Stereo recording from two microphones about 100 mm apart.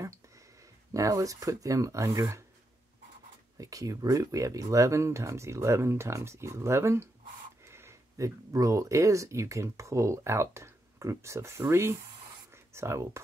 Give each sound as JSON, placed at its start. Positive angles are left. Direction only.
{"t": 0.9, "sound": "speech", "side_deg": -35}
{"t": 3.5, "sound": "speech", "side_deg": -35}